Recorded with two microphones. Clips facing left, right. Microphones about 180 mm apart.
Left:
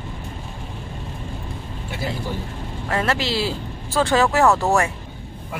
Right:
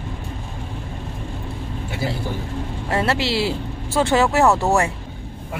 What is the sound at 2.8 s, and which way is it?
Speech, 25° right (ahead or behind).